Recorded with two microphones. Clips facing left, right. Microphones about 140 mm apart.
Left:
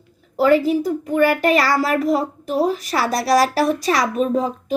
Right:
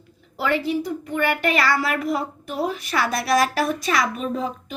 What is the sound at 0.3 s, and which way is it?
A child's voice, 40° left (ahead or behind).